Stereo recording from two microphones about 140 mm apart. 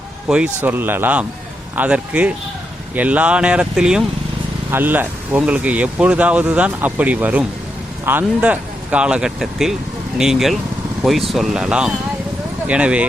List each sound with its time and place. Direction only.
0.3 s speech: 5° right (ahead or behind)